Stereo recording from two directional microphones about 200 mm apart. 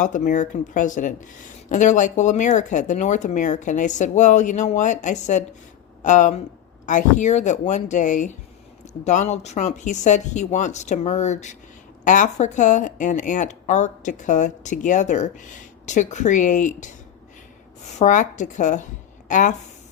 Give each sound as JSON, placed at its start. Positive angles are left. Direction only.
{"t": 0.0, "sound": "speech", "side_deg": 40}
{"t": 18.0, "sound": "speech", "side_deg": 40}